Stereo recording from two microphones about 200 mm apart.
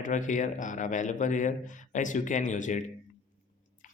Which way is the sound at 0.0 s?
40° left (ahead or behind).